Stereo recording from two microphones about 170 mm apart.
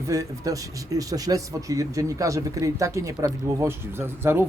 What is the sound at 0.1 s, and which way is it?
Speech, 20° right (ahead or behind).